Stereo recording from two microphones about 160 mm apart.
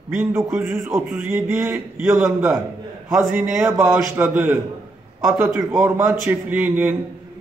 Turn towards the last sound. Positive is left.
turn(degrees=-10)  # may be behind; listen again after turning